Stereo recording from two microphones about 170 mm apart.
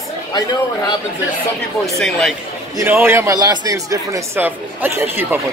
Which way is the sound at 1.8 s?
Centre (ahead or behind).